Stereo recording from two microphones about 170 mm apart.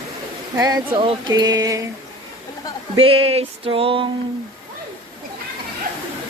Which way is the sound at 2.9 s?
35° right (ahead or behind).